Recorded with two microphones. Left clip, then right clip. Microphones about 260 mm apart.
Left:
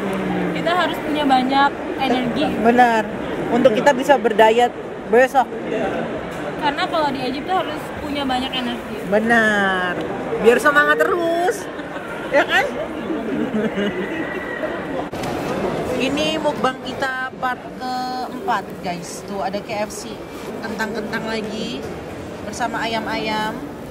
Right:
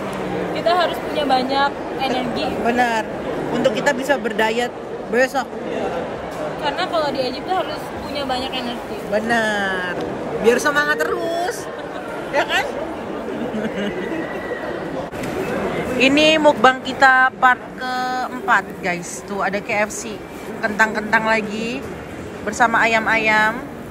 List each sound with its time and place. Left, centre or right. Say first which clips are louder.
0.7 s a woman's voice: right 2 dB; centre
2.6 s speech: left 5 dB; left
3.6 s speech: left 4 dB; centre
6.8 s speech: even; centre
9.1 s speech: left 3 dB; centre
9.7 s speech: left 2 dB; centre
12.4 s speech: left 3 dB; centre
16.0 s speech: right 9 dB; centre
22.6 s speech: right 7 dB; centre